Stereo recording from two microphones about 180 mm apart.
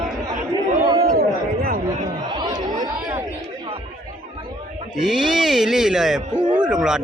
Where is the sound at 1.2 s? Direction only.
60° right (ahead or behind).